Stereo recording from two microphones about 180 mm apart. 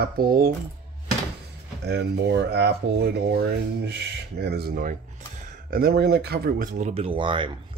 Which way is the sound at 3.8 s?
65° right (ahead or behind).